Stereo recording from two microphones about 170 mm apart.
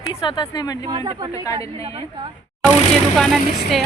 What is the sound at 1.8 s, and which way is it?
Speech, 35° right (ahead or behind).